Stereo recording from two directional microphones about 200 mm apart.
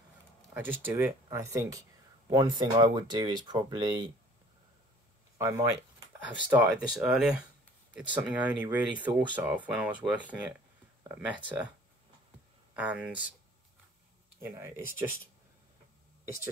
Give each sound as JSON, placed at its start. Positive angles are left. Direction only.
{"t": 0.6, "sound": "speech", "side_deg": -10}
{"t": 5.4, "sound": "speech", "side_deg": -15}
{"t": 12.7, "sound": "speech", "side_deg": -5}
{"t": 14.4, "sound": "speech", "side_deg": -10}